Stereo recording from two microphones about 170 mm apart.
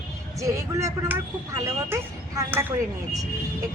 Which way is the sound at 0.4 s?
20° right (ahead or behind).